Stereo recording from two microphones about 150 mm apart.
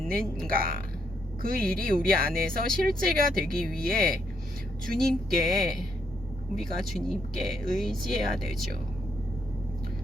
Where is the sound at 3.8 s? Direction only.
75° right (ahead or behind).